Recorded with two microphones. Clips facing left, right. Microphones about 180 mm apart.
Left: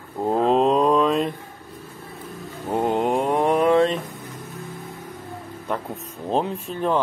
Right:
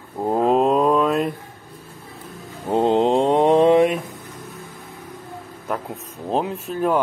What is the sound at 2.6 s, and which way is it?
Mantra, 20° right (ahead or behind).